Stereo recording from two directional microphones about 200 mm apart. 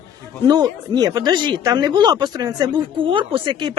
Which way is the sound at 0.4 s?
20° right (ahead or behind).